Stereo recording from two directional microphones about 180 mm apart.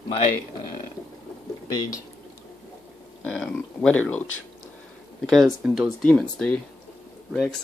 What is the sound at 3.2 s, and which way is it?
Speech, 5° left (ahead or behind).